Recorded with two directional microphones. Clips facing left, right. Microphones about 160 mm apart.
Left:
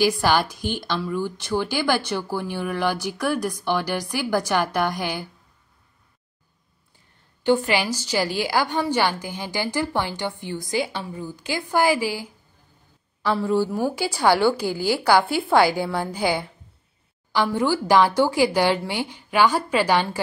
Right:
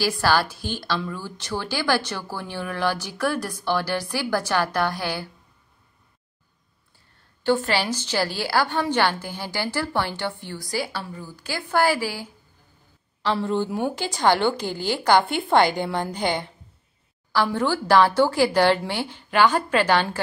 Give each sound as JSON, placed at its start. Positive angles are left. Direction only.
{"t": 0.0, "sound": "a woman's voice", "side_deg": 15}
{"t": 7.4, "sound": "a woman's voice", "side_deg": 15}
{"t": 17.5, "sound": "a woman's voice", "side_deg": 10}